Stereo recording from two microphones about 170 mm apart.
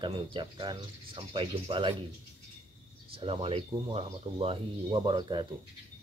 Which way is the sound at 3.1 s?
30° right (ahead or behind).